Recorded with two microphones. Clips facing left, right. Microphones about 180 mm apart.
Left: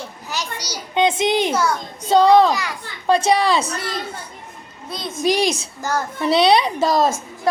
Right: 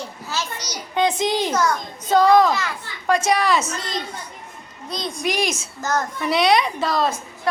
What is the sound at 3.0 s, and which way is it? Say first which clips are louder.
Speech: left 3 dB; 30° left (ahead or behind).